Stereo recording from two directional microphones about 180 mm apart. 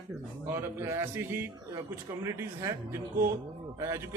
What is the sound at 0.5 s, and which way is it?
A man's voice, 15° right (ahead or behind).